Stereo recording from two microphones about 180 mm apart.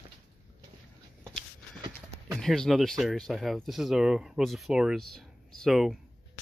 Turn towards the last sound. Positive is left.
turn(degrees=0)  # may be behind; listen again after turning